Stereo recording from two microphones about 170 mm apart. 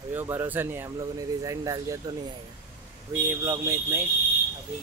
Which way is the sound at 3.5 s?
15° right (ahead or behind).